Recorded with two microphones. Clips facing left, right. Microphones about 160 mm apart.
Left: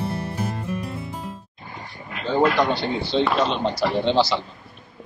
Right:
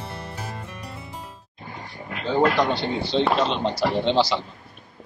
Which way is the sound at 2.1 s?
45° right (ahead or behind).